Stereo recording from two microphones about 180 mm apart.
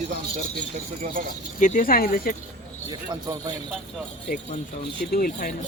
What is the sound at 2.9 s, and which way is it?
Speech, 20° right (ahead or behind).